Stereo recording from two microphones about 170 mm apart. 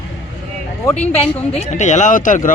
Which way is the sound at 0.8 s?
10° left (ahead or behind).